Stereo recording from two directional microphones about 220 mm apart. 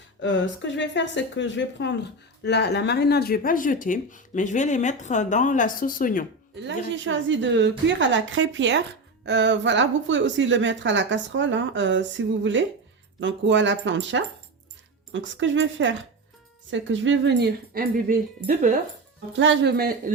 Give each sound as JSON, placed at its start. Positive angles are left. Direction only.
{"t": 0.2, "sound": "speech", "side_deg": 55}
{"t": 6.6, "sound": "a woman's voice", "side_deg": -55}
{"t": 19.4, "sound": "speech", "side_deg": -55}